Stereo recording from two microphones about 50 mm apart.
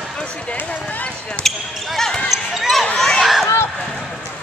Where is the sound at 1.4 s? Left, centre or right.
Centre.